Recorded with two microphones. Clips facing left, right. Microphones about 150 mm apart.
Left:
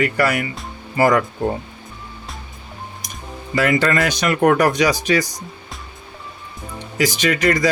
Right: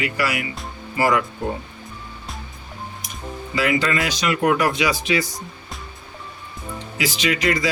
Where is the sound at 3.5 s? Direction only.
50° left (ahead or behind).